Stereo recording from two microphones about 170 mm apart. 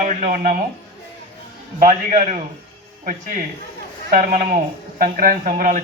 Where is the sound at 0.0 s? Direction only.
50° right (ahead or behind).